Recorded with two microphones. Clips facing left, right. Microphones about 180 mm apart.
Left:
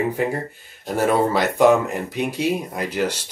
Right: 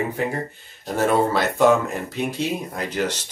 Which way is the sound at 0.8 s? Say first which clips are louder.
Left 1 dB; 10° left (ahead or behind).